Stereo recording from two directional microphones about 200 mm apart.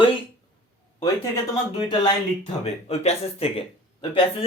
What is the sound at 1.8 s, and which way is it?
Speech, 20° left (ahead or behind).